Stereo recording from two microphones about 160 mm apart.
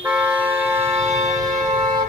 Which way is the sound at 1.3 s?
25° right (ahead or behind).